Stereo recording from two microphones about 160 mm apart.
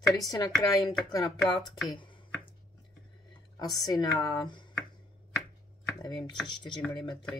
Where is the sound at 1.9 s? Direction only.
30° left (ahead or behind).